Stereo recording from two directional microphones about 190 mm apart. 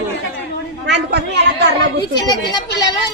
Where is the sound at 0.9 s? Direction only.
65° right (ahead or behind).